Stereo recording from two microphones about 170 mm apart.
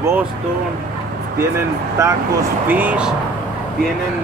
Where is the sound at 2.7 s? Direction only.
10° right (ahead or behind).